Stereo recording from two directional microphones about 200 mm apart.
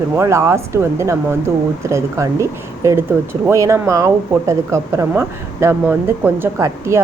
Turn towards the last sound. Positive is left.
turn(degrees=-15)  # may be behind; listen again after turning